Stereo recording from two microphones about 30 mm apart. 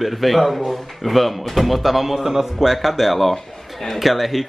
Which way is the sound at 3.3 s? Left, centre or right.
Centre.